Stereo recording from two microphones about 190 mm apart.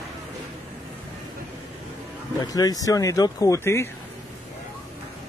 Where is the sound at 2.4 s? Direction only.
20° left (ahead or behind).